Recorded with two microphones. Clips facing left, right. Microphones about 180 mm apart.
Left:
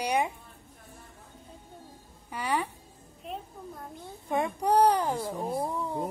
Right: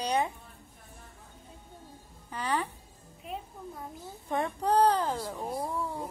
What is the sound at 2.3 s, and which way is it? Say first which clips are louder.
Speech: left 1 dB; 10° left (ahead or behind).